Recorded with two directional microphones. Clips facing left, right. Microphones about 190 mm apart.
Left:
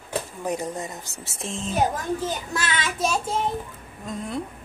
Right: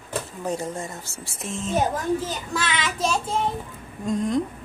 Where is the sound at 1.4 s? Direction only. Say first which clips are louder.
Right 1 dB; 30° left (ahead or behind).